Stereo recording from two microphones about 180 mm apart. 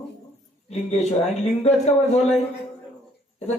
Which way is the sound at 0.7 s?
35° left (ahead or behind).